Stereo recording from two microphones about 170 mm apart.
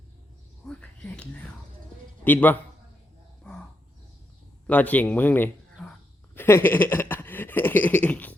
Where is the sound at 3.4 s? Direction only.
5° left (ahead or behind).